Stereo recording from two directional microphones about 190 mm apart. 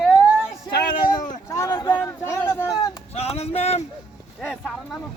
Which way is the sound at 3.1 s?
35° left (ahead or behind).